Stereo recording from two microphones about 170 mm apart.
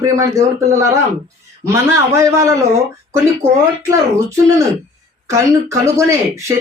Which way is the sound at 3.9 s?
15° right (ahead or behind).